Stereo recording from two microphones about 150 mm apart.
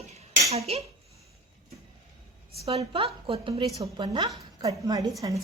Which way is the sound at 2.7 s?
40° right (ahead or behind).